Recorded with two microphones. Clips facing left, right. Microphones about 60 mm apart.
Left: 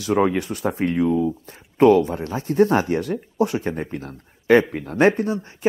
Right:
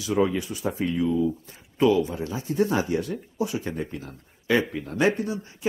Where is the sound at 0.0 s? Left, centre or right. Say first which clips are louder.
Left 4 dB; left.